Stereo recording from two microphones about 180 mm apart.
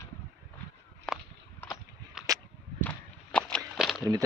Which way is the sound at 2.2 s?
Centre (ahead or behind).